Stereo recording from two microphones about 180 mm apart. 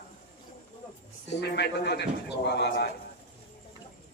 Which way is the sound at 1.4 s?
65° left (ahead or behind).